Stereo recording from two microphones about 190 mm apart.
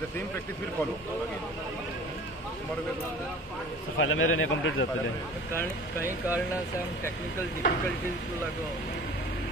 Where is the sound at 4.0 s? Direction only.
90° left.